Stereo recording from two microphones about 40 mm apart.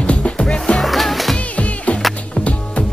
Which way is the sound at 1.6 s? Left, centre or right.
Left.